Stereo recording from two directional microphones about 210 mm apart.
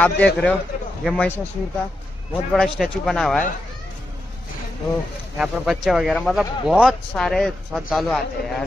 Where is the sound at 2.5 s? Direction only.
Centre (ahead or behind).